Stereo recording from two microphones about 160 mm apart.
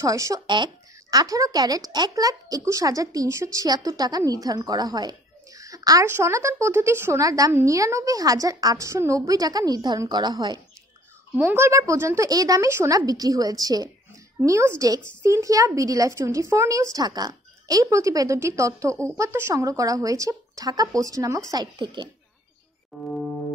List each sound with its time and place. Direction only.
0.0 s speech: 20° right (ahead or behind)
11.3 s speech: 15° right (ahead or behind)